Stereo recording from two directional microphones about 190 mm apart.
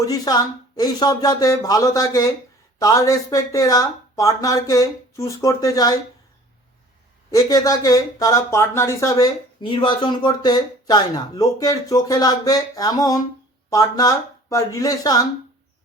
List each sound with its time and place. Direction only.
0.0 s speech: 20° left (ahead or behind)
7.3 s speech: 20° left (ahead or behind)